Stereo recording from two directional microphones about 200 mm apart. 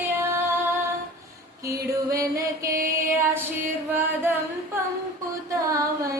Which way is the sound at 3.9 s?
10° right (ahead or behind).